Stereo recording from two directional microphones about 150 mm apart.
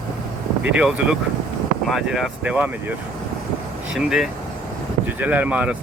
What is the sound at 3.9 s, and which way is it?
Speech, 5° right (ahead or behind).